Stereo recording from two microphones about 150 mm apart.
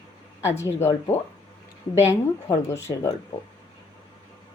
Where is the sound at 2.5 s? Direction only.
20° left (ahead or behind).